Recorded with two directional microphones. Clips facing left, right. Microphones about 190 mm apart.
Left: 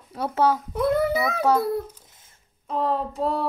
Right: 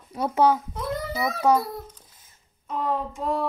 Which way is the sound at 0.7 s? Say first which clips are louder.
Left 8 dB; 65° left (ahead or behind).